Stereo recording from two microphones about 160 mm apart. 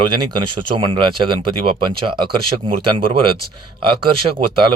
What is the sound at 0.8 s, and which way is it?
Speech, 30° right (ahead or behind).